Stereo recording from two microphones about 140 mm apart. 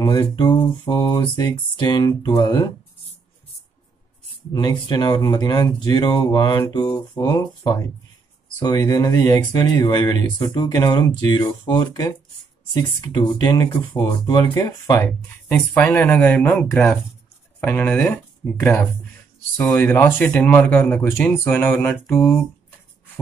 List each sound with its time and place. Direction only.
0.0 s mantra: 25° left (ahead or behind)
4.5 s speech: 30° left (ahead or behind)
11.3 s mantra: 35° left (ahead or behind)
12.7 s speech: 30° left (ahead or behind)
15.4 s speech: 10° left (ahead or behind)
19.9 s speech: 15° left (ahead or behind)